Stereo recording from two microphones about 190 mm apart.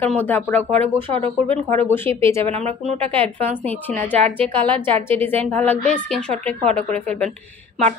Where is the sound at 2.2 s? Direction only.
15° left (ahead or behind).